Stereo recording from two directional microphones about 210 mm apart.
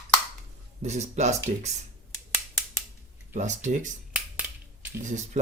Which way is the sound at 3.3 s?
35° right (ahead or behind).